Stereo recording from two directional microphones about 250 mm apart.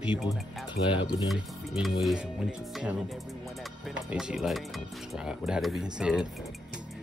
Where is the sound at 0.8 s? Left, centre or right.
Left.